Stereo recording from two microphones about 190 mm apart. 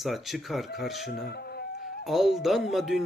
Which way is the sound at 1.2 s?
55° left (ahead or behind).